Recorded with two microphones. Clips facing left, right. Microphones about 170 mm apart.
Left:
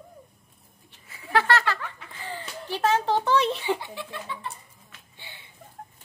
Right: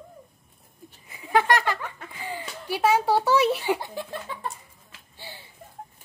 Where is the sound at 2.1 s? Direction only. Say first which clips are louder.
Right 2 dB; 10° right (ahead or behind).